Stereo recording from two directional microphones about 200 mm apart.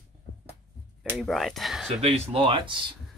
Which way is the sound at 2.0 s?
30° right (ahead or behind).